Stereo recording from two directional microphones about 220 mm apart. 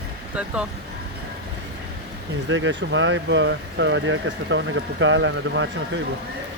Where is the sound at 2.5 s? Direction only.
55° right (ahead or behind).